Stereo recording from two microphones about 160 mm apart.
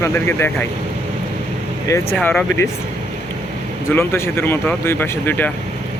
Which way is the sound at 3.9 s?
15° left (ahead or behind).